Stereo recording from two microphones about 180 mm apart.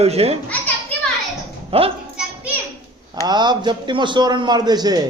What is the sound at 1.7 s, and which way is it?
Speech, 30° right (ahead or behind).